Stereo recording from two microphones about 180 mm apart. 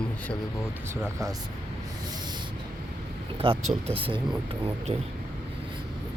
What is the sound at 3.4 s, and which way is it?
Speech, 30° right (ahead or behind).